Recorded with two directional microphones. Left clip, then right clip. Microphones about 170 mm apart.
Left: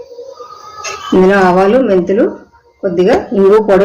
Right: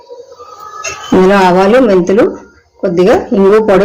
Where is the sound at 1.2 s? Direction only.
35° right (ahead or behind).